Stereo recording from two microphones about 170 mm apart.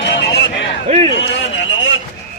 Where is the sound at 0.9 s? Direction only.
40° right (ahead or behind).